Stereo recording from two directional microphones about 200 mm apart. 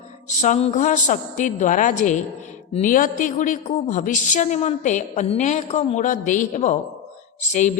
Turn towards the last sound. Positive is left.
turn(degrees=40)  # may be behind; listen again after turning